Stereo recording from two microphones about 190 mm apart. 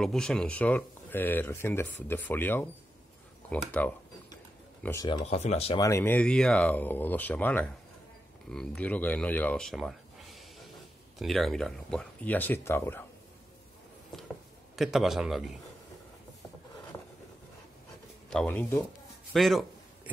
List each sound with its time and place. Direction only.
0.0 s speech: 5° left (ahead or behind)
4.8 s speech: 20° left (ahead or behind)
5.2 s speech: 35° left (ahead or behind)
5.8 s speech: 15° left (ahead or behind)
14.1 s a sound: centre (ahead or behind)
14.8 s a man's voice: centre (ahead or behind)
18.3 s a man's voice: 5° left (ahead or behind)